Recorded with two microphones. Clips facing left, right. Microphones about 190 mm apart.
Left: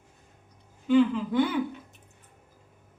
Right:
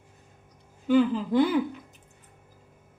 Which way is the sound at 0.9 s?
35° right (ahead or behind).